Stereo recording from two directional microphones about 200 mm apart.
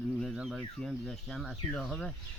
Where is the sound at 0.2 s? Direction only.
Centre (ahead or behind).